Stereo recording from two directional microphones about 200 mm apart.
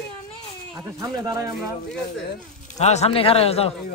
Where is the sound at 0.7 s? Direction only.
20° right (ahead or behind).